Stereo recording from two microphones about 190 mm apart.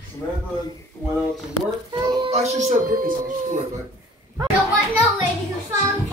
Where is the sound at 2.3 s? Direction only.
35° right (ahead or behind).